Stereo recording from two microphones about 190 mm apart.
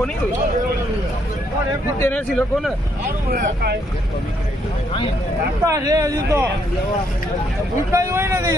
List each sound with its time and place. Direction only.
2.0 s speech: 10° left (ahead or behind)
3.3 s speech: 50° right (ahead or behind)
5.7 s speech: 15° right (ahead or behind)
7.9 s speech: 15° right (ahead or behind)